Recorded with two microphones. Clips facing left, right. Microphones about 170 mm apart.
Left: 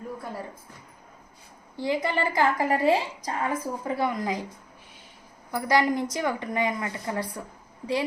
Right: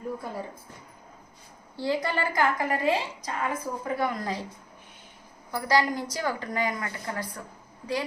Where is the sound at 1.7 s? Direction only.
15° left (ahead or behind).